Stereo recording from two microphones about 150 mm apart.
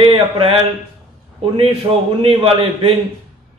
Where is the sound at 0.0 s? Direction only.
35° right (ahead or behind).